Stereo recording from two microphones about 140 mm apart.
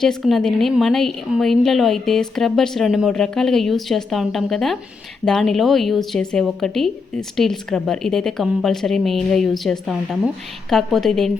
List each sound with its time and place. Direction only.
0.0 s a woman's voice: centre (ahead or behind)